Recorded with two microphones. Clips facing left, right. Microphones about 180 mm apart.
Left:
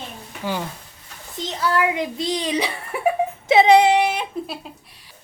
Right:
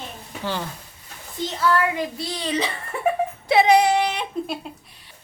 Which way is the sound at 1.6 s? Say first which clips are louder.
Even; 20° left (ahead or behind).